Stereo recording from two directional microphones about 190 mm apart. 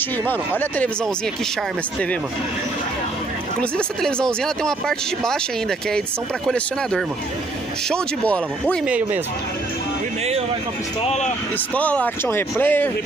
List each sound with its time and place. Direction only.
0.3 s speech: 10° left (ahead or behind)
3.7 s speech: 5° left (ahead or behind)
8.8 s speech: 5° right (ahead or behind)
11.1 s speech: 35° left (ahead or behind)
11.7 s speech: 5° left (ahead or behind)